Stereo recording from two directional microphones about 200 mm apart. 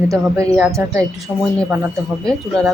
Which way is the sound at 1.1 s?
Centre (ahead or behind).